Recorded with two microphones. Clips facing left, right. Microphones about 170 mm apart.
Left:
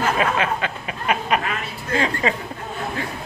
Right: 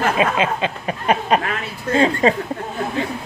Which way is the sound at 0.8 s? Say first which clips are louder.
Right 5 dB; 35° right (ahead or behind).